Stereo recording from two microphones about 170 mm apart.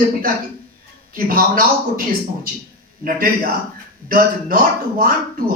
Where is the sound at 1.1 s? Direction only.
55° right (ahead or behind).